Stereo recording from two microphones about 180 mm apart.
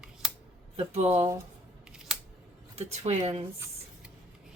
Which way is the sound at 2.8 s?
35° right (ahead or behind).